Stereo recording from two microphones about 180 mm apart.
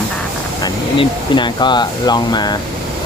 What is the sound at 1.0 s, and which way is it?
Speech, 25° left (ahead or behind).